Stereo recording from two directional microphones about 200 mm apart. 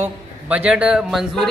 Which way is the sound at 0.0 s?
5° right (ahead or behind).